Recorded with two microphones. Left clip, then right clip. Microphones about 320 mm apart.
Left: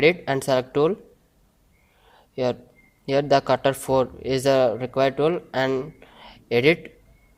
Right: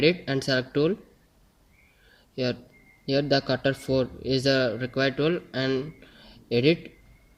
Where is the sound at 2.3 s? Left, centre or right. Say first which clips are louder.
Left 5 dB; centre.